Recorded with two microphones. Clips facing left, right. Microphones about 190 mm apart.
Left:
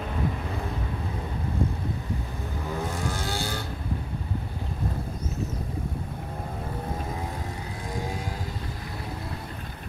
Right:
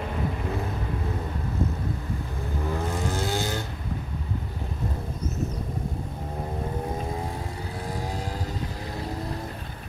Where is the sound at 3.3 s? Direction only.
15° right (ahead or behind).